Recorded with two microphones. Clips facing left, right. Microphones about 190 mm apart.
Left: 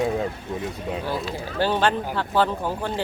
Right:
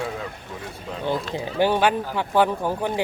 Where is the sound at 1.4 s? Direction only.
15° right (ahead or behind).